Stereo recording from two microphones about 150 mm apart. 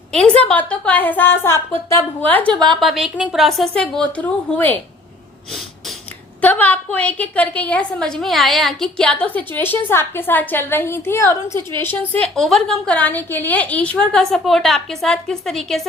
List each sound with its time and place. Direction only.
0.1 s a woman's voice: 5° left (ahead or behind)
6.4 s a woman's voice: 10° left (ahead or behind)
12.2 s a woman's voice: 5° left (ahead or behind)